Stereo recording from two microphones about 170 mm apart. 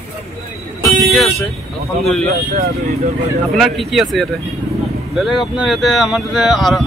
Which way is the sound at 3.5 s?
Centre (ahead or behind).